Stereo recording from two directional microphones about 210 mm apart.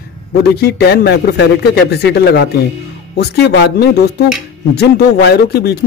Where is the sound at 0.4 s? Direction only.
50° left (ahead or behind).